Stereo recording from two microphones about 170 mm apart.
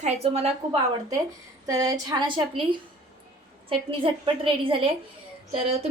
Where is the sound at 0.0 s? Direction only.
40° right (ahead or behind).